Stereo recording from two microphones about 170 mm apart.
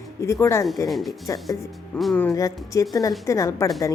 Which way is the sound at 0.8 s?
Centre (ahead or behind).